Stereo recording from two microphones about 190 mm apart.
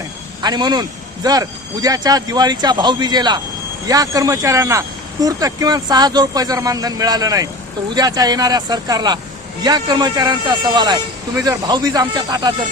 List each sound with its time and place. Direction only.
0.4 s speech: 20° right (ahead or behind)